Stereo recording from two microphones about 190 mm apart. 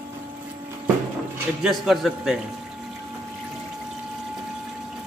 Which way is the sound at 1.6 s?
Centre (ahead or behind).